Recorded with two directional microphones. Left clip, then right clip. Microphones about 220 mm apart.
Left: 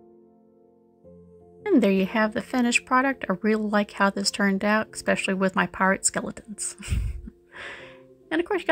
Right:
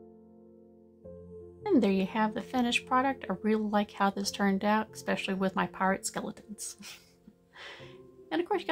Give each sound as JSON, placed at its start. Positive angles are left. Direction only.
{"t": 1.6, "sound": "speech", "side_deg": 15}
{"t": 7.5, "sound": "music", "side_deg": 15}